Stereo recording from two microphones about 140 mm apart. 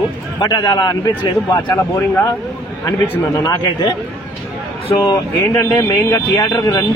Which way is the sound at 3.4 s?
30° left (ahead or behind).